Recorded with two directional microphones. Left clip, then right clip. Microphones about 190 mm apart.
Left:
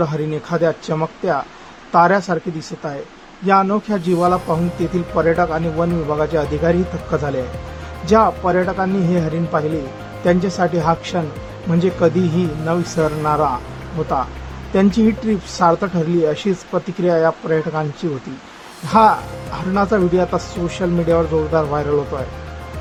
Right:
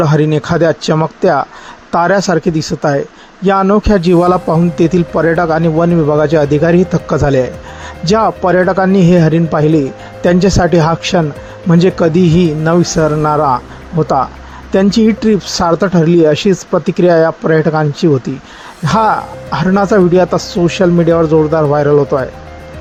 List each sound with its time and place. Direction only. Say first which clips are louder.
0.0 s speech: right 9 dB; 35° right (ahead or behind)
14.7 s speech: right 6 dB; 35° right (ahead or behind)